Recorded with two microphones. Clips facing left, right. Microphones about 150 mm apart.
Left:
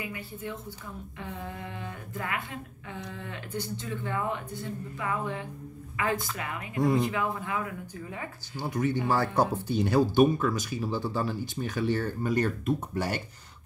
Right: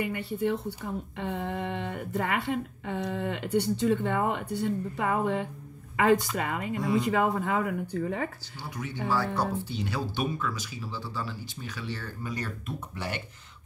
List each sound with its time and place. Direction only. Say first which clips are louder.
0.0 s speech: right 8 dB; 70° right (ahead or behind)
8.5 s speech: left 9 dB; 50° left (ahead or behind)